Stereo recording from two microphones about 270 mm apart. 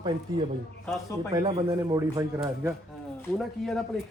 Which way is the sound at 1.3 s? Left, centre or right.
Centre.